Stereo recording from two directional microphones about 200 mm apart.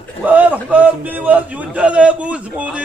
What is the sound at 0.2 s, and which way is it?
A man's voice, 5° right (ahead or behind).